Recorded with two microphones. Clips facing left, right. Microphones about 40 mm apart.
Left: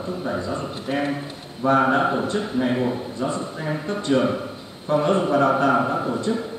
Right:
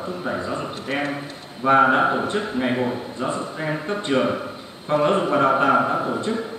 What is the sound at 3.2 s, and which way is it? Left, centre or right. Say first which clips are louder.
A man's voice: right 1 dB; right.